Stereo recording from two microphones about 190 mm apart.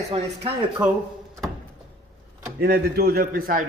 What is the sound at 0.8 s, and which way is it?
Speech, 5° right (ahead or behind).